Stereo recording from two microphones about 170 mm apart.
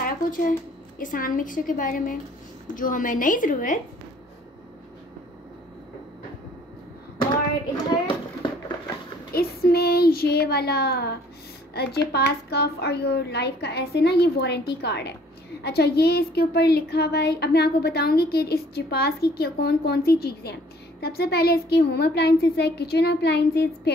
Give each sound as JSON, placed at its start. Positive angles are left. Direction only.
{"t": 0.0, "sound": "a woman's voice", "side_deg": 55}
{"t": 8.1, "sound": "a sound", "side_deg": 30}
{"t": 9.3, "sound": "a woman's voice", "side_deg": 65}